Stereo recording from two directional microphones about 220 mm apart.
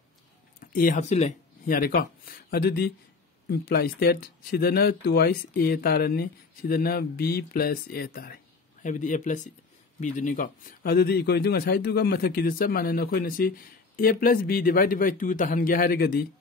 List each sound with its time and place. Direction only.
0.6 s speech: 40° left (ahead or behind)
1.8 s a man's voice: 45° left (ahead or behind)